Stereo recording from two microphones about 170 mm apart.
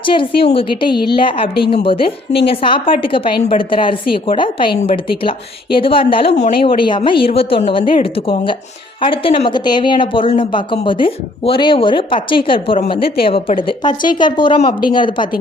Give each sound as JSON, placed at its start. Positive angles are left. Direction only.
{"t": 0.0, "sound": "a woman's voice", "side_deg": 30}